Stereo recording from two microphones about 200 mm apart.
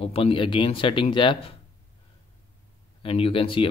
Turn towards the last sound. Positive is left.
turn(degrees=25)  # may be behind; listen again after turning